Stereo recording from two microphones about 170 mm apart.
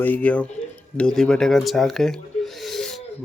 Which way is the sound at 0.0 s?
10° left (ahead or behind).